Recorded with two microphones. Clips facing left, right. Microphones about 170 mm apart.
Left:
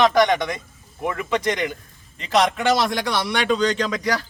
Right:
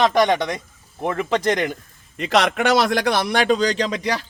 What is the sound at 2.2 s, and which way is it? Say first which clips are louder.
A man's voice: right 1 dB; 75° right (ahead or behind).